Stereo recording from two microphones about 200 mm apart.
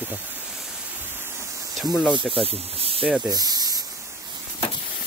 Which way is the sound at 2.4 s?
30° right (ahead or behind).